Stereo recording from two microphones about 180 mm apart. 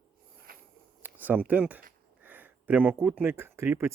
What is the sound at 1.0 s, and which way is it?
Speech, 10° right (ahead or behind).